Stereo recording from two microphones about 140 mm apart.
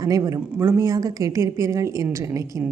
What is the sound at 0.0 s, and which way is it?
A woman's voice, 25° right (ahead or behind).